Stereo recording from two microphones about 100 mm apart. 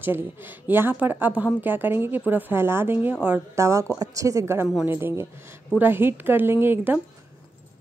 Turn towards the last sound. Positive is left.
turn(degrees=-25)  # may be behind; listen again after turning